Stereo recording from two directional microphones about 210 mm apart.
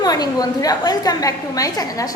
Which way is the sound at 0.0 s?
20° left (ahead or behind).